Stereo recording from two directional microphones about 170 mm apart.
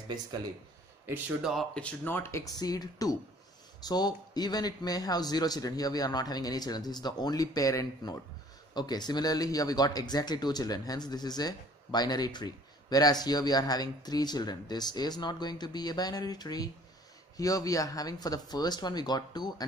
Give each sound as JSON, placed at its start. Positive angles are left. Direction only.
{"t": 1.0, "sound": "speech", "side_deg": -10}
{"t": 1.5, "sound": "speech", "side_deg": 5}